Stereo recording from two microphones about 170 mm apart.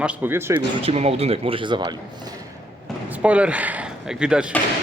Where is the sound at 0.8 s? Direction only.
35° right (ahead or behind).